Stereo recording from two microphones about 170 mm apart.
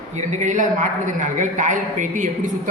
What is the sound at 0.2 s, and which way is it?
Speech, 45° right (ahead or behind).